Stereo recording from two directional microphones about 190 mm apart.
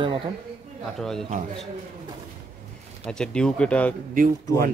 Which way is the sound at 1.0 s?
Centre (ahead or behind).